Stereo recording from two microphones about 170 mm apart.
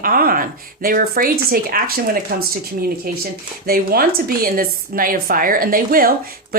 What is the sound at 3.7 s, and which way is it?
Speech, 60° right (ahead or behind).